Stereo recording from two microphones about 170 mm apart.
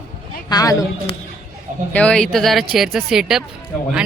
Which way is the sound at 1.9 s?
5° left (ahead or behind).